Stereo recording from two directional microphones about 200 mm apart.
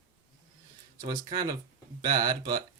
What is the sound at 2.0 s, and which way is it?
Speech, 20° right (ahead or behind).